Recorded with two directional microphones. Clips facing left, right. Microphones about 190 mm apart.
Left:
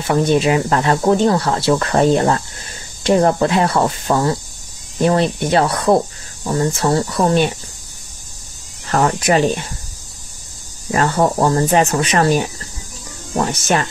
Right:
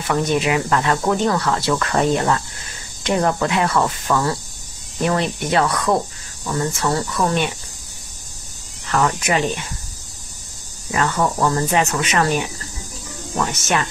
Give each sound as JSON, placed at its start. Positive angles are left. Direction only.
{"t": 0.0, "sound": "speech", "side_deg": 30}
{"t": 8.8, "sound": "speech", "side_deg": 35}
{"t": 10.9, "sound": "speech", "side_deg": 40}